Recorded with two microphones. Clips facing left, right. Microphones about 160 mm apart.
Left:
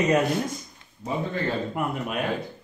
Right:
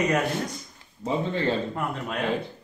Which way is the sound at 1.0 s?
5° right (ahead or behind).